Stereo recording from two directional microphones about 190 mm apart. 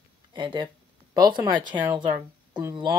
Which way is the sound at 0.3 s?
25° right (ahead or behind).